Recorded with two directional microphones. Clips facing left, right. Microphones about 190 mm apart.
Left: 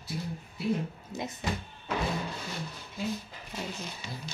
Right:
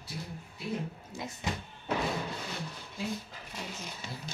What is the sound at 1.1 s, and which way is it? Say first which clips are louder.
Speech: left 5 dB; 20° left (ahead or behind).